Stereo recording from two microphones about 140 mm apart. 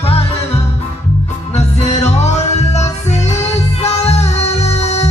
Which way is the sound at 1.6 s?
50° left (ahead or behind).